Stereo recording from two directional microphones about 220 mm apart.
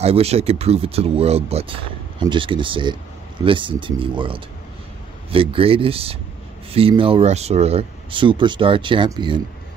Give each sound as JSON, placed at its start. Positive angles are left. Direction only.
{"t": 0.0, "sound": "speech", "side_deg": -30}